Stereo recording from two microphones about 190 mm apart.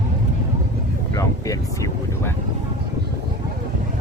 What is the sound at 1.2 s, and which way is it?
Speech, 20° left (ahead or behind).